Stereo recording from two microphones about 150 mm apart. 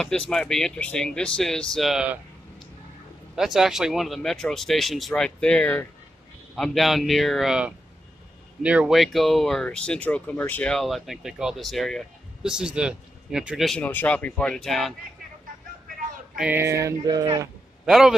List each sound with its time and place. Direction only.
0.3 s speech: 5° left (ahead or behind)
3.3 s speech: centre (ahead or behind)
16.3 s a sound: 15° right (ahead or behind)
17.8 s speech: 5° right (ahead or behind)